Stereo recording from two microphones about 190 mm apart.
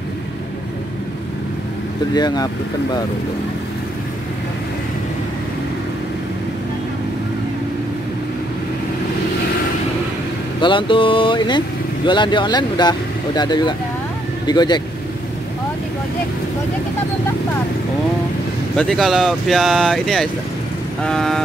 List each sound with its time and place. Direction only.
2.1 s speech: 20° left (ahead or behind)
10.6 s speech: 25° left (ahead or behind)
18.8 s speech: centre (ahead or behind)